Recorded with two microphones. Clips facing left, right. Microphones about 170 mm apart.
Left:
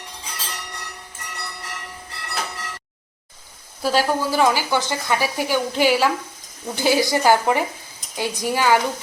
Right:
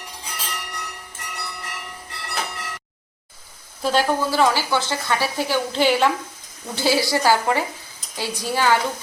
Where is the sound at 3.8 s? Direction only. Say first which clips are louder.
Even; 10° left (ahead or behind).